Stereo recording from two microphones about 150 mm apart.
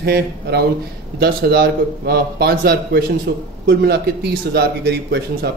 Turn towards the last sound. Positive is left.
turn(degrees=-90)